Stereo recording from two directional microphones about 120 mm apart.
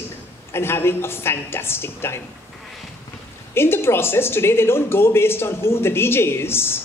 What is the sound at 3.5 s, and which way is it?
Speech, 20° left (ahead or behind).